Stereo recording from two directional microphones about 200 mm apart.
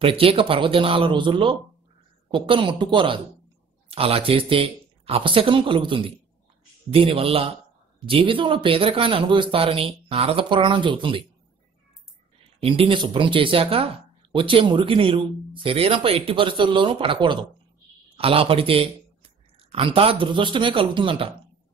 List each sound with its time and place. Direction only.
0.0 s speech: 25° right (ahead or behind)
12.6 s a man's voice: 25° right (ahead or behind)